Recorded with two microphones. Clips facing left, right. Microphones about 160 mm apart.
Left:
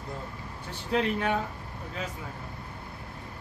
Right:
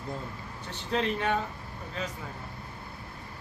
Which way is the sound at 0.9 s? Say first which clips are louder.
Left 1 dB; 5° left (ahead or behind).